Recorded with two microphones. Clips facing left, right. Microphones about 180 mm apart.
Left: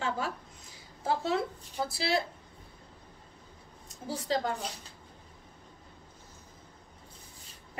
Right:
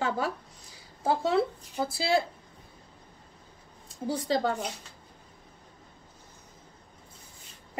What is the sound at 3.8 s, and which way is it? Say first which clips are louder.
Speech: right 4 dB; 30° right (ahead or behind).